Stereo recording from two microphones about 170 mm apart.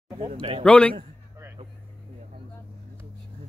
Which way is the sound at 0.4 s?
30° right (ahead or behind).